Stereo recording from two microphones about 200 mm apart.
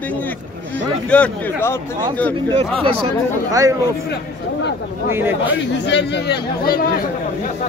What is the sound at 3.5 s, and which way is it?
Speech, 15° right (ahead or behind).